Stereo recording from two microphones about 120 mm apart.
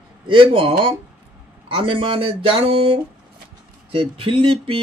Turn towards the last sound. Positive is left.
turn(degrees=-50)  # may be behind; listen again after turning